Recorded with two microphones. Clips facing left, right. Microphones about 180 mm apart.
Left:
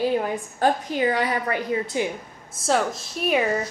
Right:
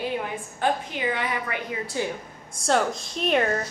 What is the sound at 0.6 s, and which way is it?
Speech, 40° left (ahead or behind).